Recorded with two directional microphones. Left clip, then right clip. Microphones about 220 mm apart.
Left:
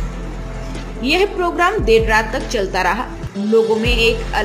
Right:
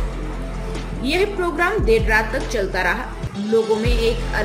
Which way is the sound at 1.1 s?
15° left (ahead or behind).